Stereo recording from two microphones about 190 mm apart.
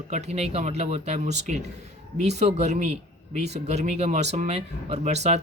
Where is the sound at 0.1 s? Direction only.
35° right (ahead or behind).